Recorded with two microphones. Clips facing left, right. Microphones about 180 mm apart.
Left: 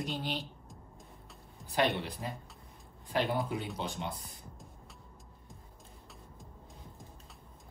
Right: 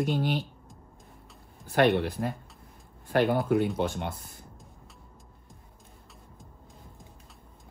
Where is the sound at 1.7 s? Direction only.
60° right (ahead or behind).